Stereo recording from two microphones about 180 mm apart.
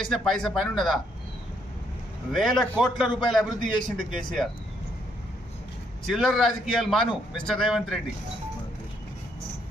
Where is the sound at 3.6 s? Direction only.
25° left (ahead or behind).